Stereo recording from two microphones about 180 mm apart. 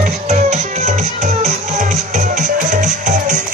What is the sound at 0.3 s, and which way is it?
Music, 40° right (ahead or behind).